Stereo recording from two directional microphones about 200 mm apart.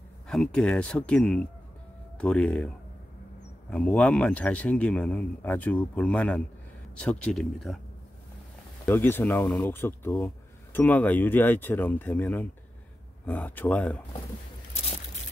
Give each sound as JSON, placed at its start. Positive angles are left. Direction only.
{"t": 0.3, "sound": "speech", "side_deg": 5}
{"t": 3.7, "sound": "speech", "side_deg": 5}
{"t": 8.8, "sound": "speech", "side_deg": 10}
{"t": 14.7, "sound": "a sound", "side_deg": 30}